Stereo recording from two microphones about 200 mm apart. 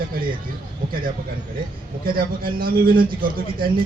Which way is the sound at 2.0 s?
45° right (ahead or behind).